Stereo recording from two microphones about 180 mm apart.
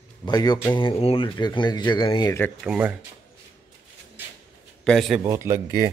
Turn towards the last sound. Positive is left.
turn(degrees=-15)  # may be behind; listen again after turning